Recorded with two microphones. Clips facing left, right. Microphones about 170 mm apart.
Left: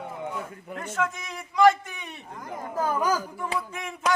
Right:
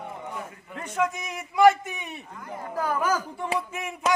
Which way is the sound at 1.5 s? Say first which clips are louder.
Right 1 dB; 10° right (ahead or behind).